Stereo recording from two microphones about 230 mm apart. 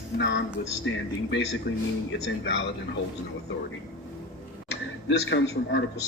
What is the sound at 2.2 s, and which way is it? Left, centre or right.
Speech, left.